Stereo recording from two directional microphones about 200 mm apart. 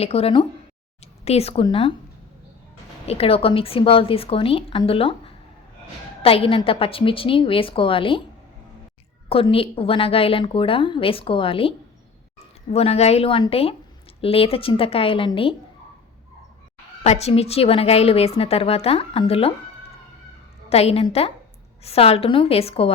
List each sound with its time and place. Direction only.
0.0 s a woman's voice: 30° left (ahead or behind)
3.1 s a woman's voice: 30° left (ahead or behind)
9.3 s a woman's voice: 30° left (ahead or behind)
12.7 s a woman's voice: 30° left (ahead or behind)
17.0 s a woman's voice: 30° left (ahead or behind)
20.7 s a woman's voice: 30° left (ahead or behind)